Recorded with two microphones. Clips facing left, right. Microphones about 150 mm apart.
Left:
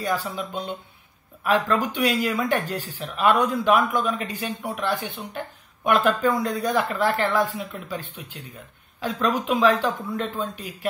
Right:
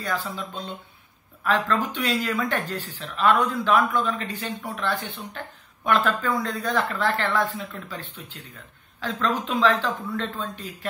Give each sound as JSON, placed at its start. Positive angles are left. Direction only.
{"t": 0.0, "sound": "speech", "side_deg": 15}